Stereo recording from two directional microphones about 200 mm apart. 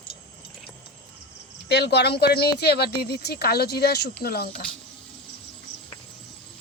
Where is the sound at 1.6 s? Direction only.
55° left (ahead or behind).